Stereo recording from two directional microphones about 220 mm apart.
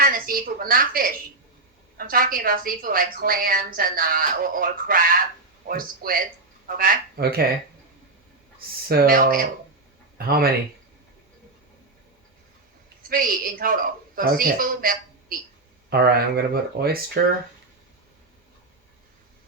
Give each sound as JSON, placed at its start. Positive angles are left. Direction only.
{"t": 0.0, "sound": "a woman's voice", "side_deg": -40}
{"t": 8.5, "sound": "a woman's voice", "side_deg": -45}
{"t": 13.0, "sound": "a woman's voice", "side_deg": -40}